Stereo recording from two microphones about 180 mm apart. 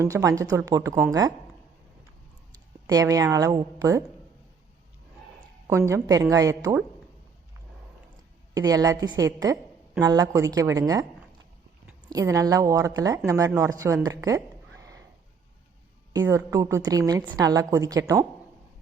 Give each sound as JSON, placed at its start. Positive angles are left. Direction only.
{"t": 0.0, "sound": "speech", "side_deg": -20}
{"t": 2.5, "sound": "a woman's voice", "side_deg": -20}
{"t": 5.6, "sound": "a woman's voice", "side_deg": -15}
{"t": 8.5, "sound": "a woman's voice", "side_deg": -20}
{"t": 12.0, "sound": "a woman's voice", "side_deg": -20}
{"t": 16.2, "sound": "a woman's voice", "side_deg": -15}